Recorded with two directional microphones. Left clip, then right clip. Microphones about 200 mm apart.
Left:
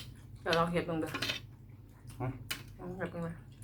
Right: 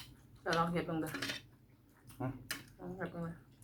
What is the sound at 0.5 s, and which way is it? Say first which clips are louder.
Speech: left 4 dB; 15° left (ahead or behind).